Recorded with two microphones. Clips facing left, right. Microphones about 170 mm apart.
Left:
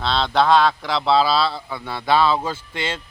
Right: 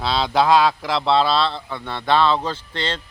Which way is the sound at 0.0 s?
5° right (ahead or behind).